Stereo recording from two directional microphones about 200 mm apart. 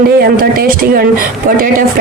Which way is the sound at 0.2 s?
50° right (ahead or behind).